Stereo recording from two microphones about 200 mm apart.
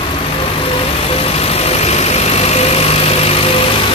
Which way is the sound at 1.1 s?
30° left (ahead or behind).